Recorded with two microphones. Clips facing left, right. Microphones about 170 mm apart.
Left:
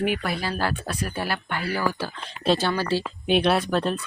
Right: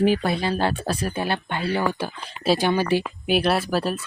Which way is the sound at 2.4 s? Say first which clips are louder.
Right 2 dB; 10° right (ahead or behind).